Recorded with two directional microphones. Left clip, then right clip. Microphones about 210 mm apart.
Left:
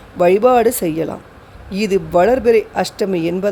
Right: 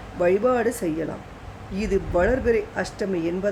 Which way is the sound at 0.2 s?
35° left (ahead or behind).